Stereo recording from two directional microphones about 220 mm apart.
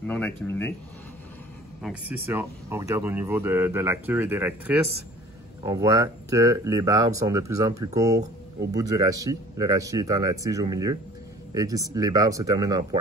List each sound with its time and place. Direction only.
0.0 s speech: 10° left (ahead or behind)
1.8 s speech: 5° right (ahead or behind)